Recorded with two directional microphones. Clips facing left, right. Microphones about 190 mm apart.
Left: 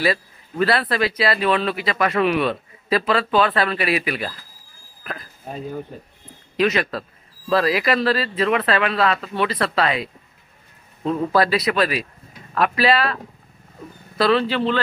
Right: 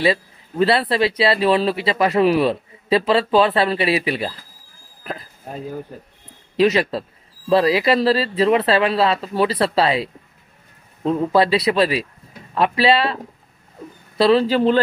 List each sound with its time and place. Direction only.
0.0 s a man's voice: 25° right (ahead or behind)
6.5 s a man's voice: 30° right (ahead or behind)